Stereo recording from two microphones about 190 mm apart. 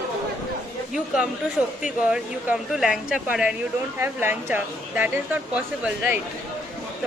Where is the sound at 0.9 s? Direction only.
5° right (ahead or behind).